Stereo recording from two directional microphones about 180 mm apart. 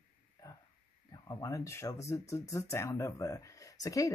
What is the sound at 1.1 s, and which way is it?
Speech, 20° left (ahead or behind).